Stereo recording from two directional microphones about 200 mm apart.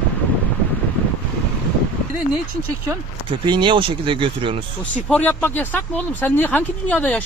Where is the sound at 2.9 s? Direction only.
25° right (ahead or behind).